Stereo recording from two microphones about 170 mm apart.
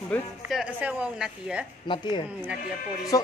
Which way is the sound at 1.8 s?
30° left (ahead or behind).